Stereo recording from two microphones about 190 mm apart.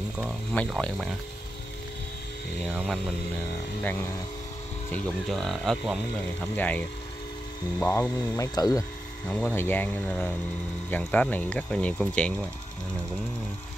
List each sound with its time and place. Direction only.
0.2 s speech: 5° left (ahead or behind)
2.7 s speech: 5° right (ahead or behind)
4.9 s speech: centre (ahead or behind)
7.8 s speech: 15° left (ahead or behind)